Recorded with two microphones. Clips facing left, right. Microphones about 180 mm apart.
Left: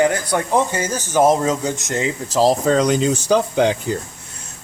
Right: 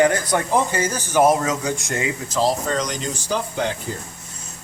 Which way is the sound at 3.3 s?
90° left.